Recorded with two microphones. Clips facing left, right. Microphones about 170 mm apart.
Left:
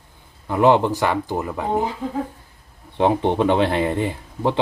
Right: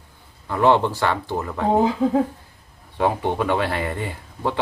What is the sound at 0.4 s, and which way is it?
Speech, 15° left (ahead or behind).